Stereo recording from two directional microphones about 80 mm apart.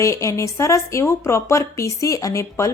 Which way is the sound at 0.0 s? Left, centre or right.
Left.